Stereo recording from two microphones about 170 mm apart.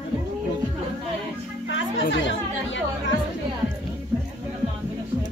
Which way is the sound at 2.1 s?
90° left.